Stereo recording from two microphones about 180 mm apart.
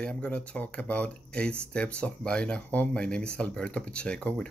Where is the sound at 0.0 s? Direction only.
5° left (ahead or behind).